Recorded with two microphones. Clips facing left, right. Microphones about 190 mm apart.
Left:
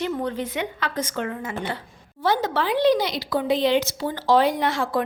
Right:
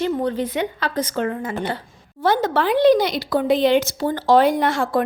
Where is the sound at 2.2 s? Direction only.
50° right (ahead or behind).